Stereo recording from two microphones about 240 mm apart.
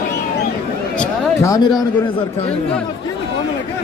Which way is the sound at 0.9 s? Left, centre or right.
Centre.